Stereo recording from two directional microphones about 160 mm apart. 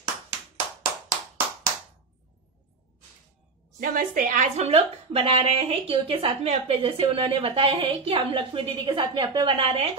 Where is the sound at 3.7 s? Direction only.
60° right (ahead or behind).